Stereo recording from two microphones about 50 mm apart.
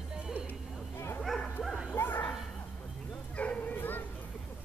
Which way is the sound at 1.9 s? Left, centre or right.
Left.